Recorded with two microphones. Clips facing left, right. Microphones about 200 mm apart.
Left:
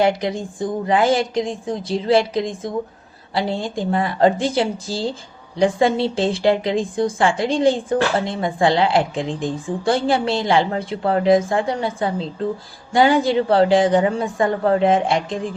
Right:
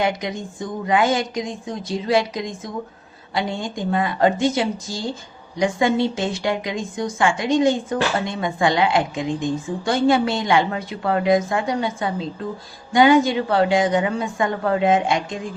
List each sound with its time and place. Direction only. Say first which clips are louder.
0.0 s speech: left 4 dB; 30° left (ahead or behind)